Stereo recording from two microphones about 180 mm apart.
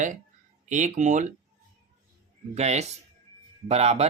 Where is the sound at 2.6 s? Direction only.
40° right (ahead or behind).